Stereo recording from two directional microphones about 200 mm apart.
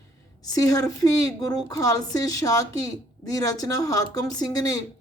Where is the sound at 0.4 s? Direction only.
20° left (ahead or behind).